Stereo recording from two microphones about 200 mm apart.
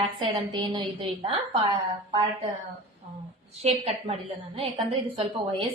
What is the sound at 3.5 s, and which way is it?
A woman's voice, 30° right (ahead or behind).